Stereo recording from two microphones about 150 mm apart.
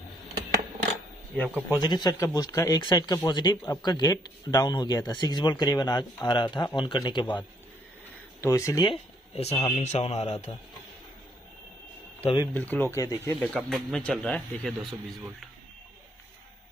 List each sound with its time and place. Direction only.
1.3 s speech: 5° left (ahead or behind)
1.8 s speech: 30° left (ahead or behind)
8.4 s a man's voice: 20° left (ahead or behind); by 10.4 s 45° left (ahead or behind)
12.2 s speech: 40° left (ahead or behind)
12.5 s speech: 10° left (ahead or behind)
13.4 s speech: 5° left (ahead or behind)